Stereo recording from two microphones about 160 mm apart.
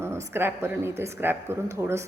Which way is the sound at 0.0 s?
15° right (ahead or behind).